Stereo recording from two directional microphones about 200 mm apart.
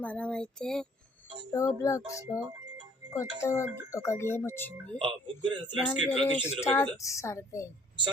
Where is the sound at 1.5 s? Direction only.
15° left (ahead or behind).